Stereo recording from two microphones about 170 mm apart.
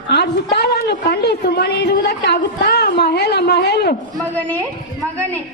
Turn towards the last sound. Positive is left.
turn(degrees=75)  # may be behind; listen again after turning